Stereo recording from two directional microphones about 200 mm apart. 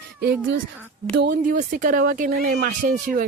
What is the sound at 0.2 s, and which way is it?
A child's voice, 60° right (ahead or behind).